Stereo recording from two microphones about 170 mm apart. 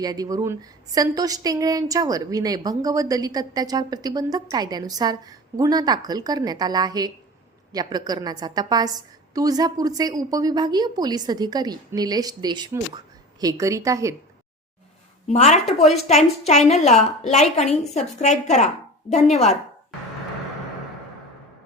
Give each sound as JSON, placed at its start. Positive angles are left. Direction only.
{"t": 0.0, "sound": "a woman's voice", "side_deg": -20}
{"t": 15.3, "sound": "a woman's voice", "side_deg": 40}